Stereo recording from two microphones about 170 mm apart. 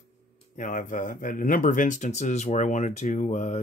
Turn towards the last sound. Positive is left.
turn(degrees=45)  # may be behind; listen again after turning